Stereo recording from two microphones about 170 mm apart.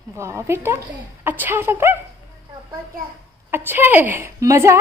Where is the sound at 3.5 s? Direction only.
10° right (ahead or behind).